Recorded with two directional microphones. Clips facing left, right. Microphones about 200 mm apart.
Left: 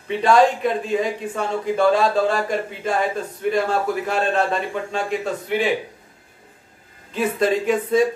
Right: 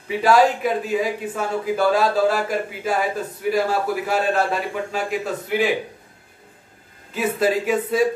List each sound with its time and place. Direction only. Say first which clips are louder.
0.1 s speech: even; 5° right (ahead or behind)
7.1 s speech: left 1 dB; 5° right (ahead or behind)